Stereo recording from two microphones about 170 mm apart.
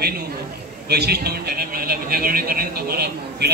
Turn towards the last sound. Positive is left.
turn(degrees=-65)  # may be behind; listen again after turning